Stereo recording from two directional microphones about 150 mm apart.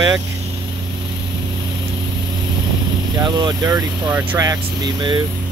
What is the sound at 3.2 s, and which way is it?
Speech, 30° right (ahead or behind).